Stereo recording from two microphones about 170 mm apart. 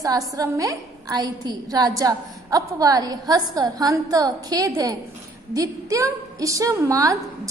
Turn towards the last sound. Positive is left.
turn(degrees=-20)  # may be behind; listen again after turning